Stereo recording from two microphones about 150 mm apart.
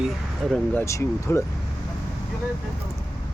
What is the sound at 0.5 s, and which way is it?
Speech, 10° left (ahead or behind).